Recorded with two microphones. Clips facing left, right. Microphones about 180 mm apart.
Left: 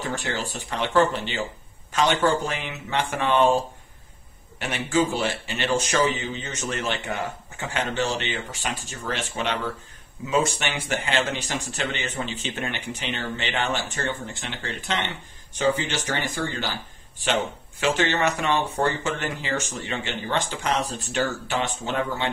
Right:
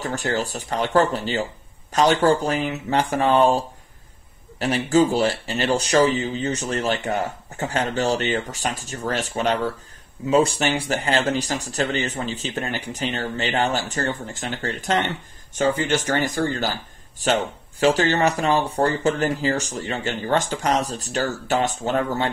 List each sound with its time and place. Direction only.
0.0 s speech: 40° right (ahead or behind)
4.6 s speech: 35° right (ahead or behind)